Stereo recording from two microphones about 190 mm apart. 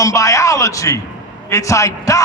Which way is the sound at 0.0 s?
15° left (ahead or behind).